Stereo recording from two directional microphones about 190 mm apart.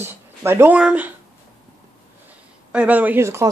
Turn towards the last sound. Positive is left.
turn(degrees=-15)  # may be behind; listen again after turning